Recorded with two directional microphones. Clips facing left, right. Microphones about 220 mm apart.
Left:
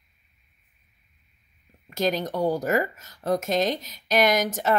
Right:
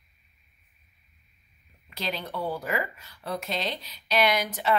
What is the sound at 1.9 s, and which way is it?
Speech, 45° left (ahead or behind).